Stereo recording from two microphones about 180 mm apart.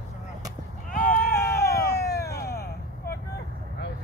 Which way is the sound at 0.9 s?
50° left (ahead or behind).